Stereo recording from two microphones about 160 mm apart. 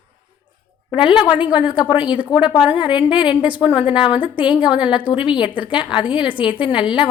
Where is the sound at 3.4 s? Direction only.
10° right (ahead or behind).